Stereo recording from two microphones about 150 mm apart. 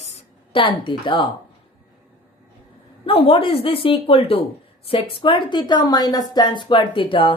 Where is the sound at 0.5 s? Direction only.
35° left (ahead or behind).